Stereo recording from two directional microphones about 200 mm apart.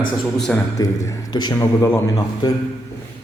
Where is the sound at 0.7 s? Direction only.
15° left (ahead or behind).